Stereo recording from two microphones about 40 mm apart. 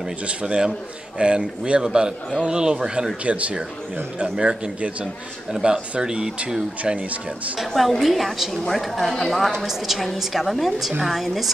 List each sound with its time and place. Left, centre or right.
0.3 s a man's voice: right
3.3 s a man's voice: right; by 6.3 s centre
6.9 s speech: right
7.5 s a woman's voice: centre
9.7 s a woman's voice: centre